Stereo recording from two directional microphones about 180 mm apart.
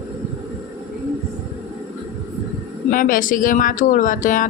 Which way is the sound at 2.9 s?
50° left (ahead or behind).